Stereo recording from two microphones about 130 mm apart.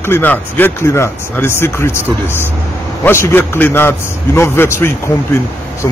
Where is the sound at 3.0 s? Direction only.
20° left (ahead or behind).